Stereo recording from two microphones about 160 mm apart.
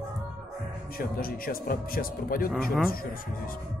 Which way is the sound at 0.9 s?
65° left (ahead or behind).